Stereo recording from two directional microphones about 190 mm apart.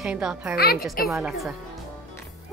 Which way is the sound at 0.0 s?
5° right (ahead or behind).